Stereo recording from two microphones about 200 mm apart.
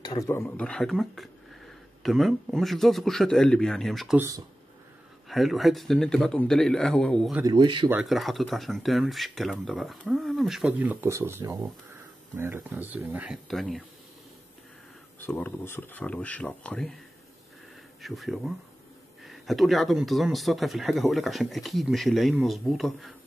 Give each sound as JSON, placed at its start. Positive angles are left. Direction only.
{"t": 0.0, "sound": "speech", "side_deg": 20}
{"t": 0.4, "sound": "speech", "side_deg": 5}
{"t": 5.3, "sound": "speech", "side_deg": 0}
{"t": 7.4, "sound": "speech", "side_deg": -25}
{"t": 7.9, "sound": "speech", "side_deg": 0}
{"t": 15.1, "sound": "speech", "side_deg": 10}
{"t": 18.0, "sound": "speech", "side_deg": 0}